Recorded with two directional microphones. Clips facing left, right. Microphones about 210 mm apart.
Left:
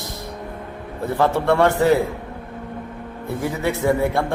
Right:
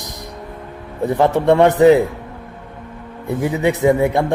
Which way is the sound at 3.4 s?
15° right (ahead or behind).